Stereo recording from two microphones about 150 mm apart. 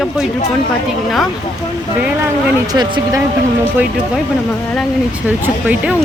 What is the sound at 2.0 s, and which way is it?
Speech, 10° right (ahead or behind).